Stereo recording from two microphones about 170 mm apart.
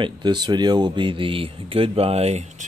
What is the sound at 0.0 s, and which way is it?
Speech, 25° right (ahead or behind).